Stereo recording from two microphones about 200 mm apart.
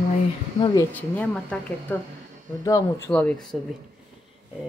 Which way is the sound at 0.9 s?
10° left (ahead or behind).